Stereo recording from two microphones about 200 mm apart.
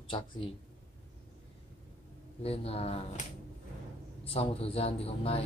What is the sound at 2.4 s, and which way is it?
Speech, 30° left (ahead or behind).